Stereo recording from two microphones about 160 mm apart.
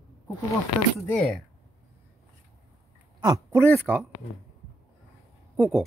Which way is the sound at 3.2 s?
20° right (ahead or behind).